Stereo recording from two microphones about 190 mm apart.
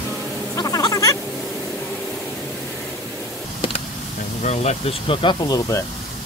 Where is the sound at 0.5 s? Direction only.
20° left (ahead or behind).